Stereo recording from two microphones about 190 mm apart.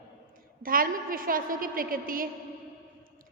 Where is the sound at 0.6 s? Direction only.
50° right (ahead or behind).